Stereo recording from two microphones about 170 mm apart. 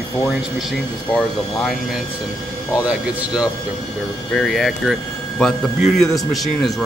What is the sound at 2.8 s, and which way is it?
A man's voice, 5° right (ahead or behind).